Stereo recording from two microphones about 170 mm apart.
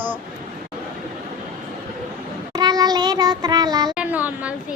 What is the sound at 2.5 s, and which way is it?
Child singing, 20° right (ahead or behind).